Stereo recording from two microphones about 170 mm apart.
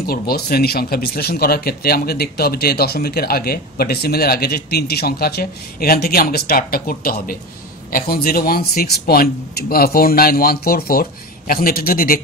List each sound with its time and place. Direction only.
0.0 s speech: 65° left (ahead or behind)